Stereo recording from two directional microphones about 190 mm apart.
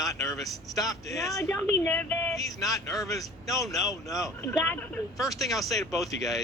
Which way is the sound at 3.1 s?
20° left (ahead or behind).